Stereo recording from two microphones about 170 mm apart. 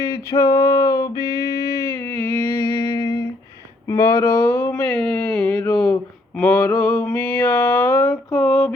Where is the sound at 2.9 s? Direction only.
20° left (ahead or behind).